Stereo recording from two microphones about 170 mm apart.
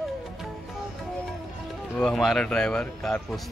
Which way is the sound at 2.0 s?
5° left (ahead or behind).